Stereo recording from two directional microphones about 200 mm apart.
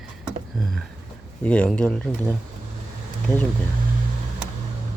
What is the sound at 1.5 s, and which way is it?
Speech, 5° left (ahead or behind).